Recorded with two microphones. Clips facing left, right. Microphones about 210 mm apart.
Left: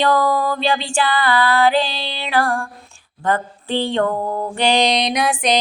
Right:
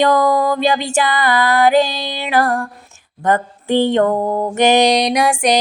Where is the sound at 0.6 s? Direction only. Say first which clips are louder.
Right 3 dB; 45° right (ahead or behind).